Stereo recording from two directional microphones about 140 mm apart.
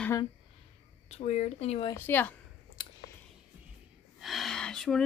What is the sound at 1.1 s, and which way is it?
Speech, 50° left (ahead or behind).